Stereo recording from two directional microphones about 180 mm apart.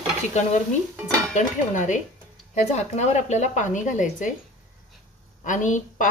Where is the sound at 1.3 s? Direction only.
45° left (ahead or behind).